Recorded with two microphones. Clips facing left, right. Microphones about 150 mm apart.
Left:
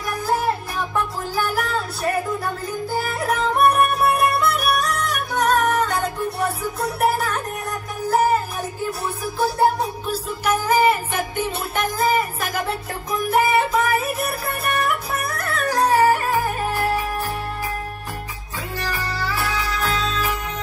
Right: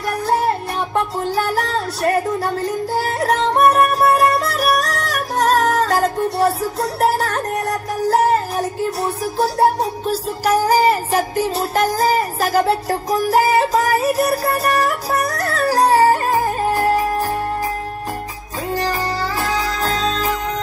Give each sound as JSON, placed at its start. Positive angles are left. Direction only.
{"t": 0.3, "sound": "music", "side_deg": -70}
{"t": 0.7, "sound": "a sound", "side_deg": -30}
{"t": 1.4, "sound": "music", "side_deg": -70}
{"t": 10.4, "sound": "music", "side_deg": -35}
{"t": 18.8, "sound": "music", "side_deg": -40}